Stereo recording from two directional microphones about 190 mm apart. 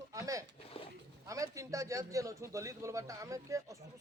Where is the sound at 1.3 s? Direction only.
15° right (ahead or behind).